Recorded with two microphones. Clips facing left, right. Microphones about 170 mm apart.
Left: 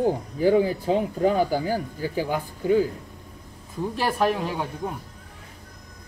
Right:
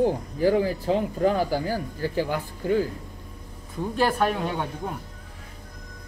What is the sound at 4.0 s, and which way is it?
Speech, 5° left (ahead or behind).